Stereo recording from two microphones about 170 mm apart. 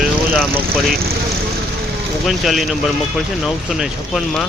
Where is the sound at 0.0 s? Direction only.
Centre (ahead or behind).